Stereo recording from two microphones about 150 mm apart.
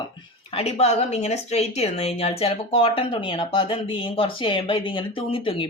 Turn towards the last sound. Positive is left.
turn(degrees=35)  # may be behind; listen again after turning